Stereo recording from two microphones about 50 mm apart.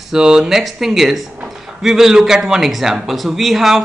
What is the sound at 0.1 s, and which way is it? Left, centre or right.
Speech, centre.